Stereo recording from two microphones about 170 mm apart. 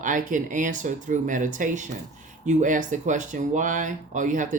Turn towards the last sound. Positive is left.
turn(degrees=-50)  # may be behind; listen again after turning